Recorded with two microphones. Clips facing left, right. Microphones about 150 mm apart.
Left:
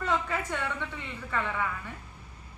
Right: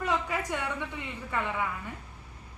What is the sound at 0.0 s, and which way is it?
A woman's voice, 10° right (ahead or behind).